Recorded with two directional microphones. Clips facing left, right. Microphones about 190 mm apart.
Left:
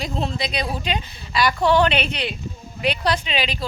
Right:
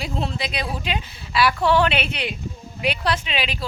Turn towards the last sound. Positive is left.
turn(degrees=-5)  # may be behind; listen again after turning